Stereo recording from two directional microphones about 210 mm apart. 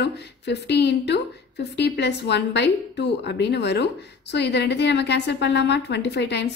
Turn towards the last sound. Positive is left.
turn(degrees=55)  # may be behind; listen again after turning